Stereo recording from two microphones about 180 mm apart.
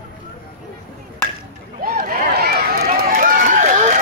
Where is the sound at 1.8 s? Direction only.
55° right (ahead or behind).